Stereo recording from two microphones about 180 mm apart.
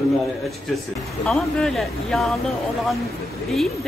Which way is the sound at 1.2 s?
Centre (ahead or behind).